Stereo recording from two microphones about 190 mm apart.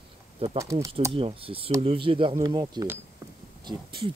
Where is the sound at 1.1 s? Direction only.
30° right (ahead or behind).